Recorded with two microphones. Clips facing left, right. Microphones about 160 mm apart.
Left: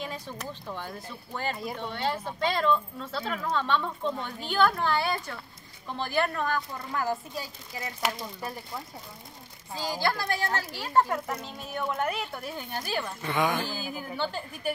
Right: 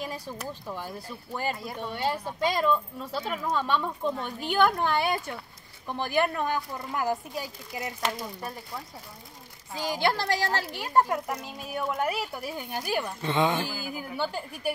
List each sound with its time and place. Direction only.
0.0 s speech: 10° right (ahead or behind)
8.0 s speech: centre (ahead or behind)
9.8 s a woman's voice: 20° right (ahead or behind)
13.7 s speech: 10° right (ahead or behind)